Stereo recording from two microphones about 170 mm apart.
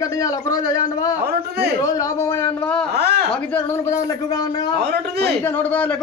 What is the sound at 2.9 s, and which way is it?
Speech, 70° right (ahead or behind).